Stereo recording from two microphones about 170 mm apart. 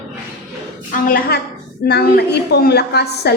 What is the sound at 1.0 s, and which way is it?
Speech, 55° left (ahead or behind).